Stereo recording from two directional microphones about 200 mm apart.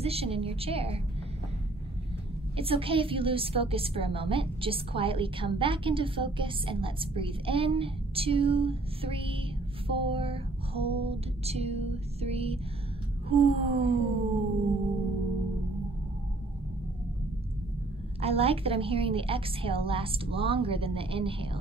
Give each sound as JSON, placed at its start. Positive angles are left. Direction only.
{"t": 0.0, "sound": "a woman's voice", "side_deg": -30}
{"t": 2.5, "sound": "a woman's voice", "side_deg": -25}
{"t": 18.2, "sound": "a woman's voice", "side_deg": -30}